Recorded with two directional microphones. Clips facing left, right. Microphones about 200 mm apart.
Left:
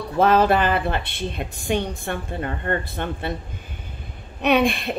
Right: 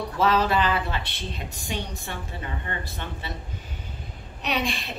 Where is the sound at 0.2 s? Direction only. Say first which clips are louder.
Left 5 dB; 55° left (ahead or behind).